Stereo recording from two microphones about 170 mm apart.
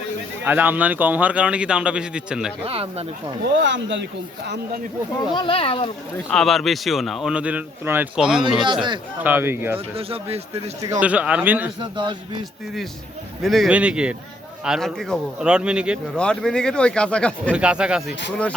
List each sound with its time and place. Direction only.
0.4 s a man's voice: 10° right (ahead or behind)
2.6 s speech: 35° right (ahead or behind)
3.5 s speech: 90° right
5.3 s speech: 30° left (ahead or behind)
6.3 s speech: centre (ahead or behind)
8.6 s speech: 30° right (ahead or behind)
9.2 s a man's voice: 15° right (ahead or behind)
9.7 s speech: 35° right (ahead or behind)
11.0 s a man's voice: 5° right (ahead or behind)
11.8 s speech: 25° right (ahead or behind)
13.4 s a man's voice: centre (ahead or behind)
16.1 s speech: 5° left (ahead or behind)
17.5 s speech: 5° right (ahead or behind)